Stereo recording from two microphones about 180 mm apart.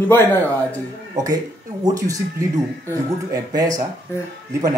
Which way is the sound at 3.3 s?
20° right (ahead or behind).